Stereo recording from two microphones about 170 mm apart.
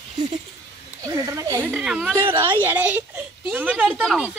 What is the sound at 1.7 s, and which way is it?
A child's voice, 5° right (ahead or behind).